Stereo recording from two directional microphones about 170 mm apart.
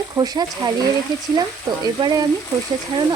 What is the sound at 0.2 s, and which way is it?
Stir, 25° right (ahead or behind).